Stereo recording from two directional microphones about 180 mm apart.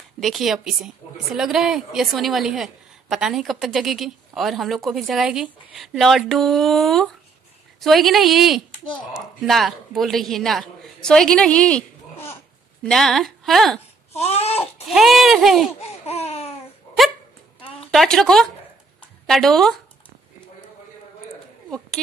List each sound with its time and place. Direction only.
0.2 s a woman's voice: centre (ahead or behind)
14.1 s a sound: 35° left (ahead or behind)
14.9 s speech: centre (ahead or behind)
15.8 s laughter: 35° left (ahead or behind)
17.9 s speech: 5° left (ahead or behind)
22.0 s speech: 5° left (ahead or behind)